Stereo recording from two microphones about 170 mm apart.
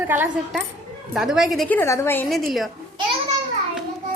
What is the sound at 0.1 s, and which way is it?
A woman's voice, 10° right (ahead or behind).